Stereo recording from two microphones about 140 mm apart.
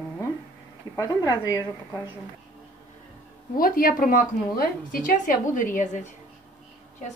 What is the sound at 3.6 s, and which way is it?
A woman's voice, 90° left.